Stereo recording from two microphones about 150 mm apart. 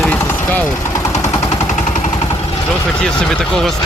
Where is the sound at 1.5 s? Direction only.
55° left (ahead or behind).